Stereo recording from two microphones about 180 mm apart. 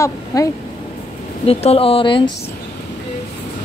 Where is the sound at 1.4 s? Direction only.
35° left (ahead or behind).